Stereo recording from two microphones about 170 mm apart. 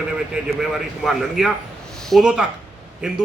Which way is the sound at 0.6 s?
Centre (ahead or behind).